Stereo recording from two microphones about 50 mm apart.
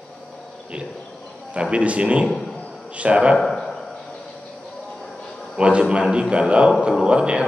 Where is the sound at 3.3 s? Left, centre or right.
Centre.